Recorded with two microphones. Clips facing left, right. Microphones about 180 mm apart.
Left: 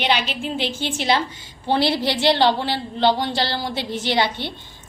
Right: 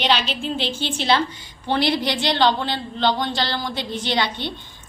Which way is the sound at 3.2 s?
30° left (ahead or behind).